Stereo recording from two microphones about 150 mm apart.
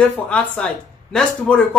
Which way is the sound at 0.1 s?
5° left (ahead or behind).